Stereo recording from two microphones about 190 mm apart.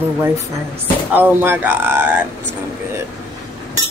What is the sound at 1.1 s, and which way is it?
Speech, 10° right (ahead or behind).